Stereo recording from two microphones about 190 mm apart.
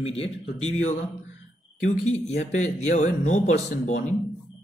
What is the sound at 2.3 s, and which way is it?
A man's voice, 35° left (ahead or behind).